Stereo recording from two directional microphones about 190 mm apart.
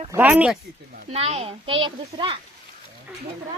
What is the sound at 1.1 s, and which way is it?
Speech, 35° right (ahead or behind).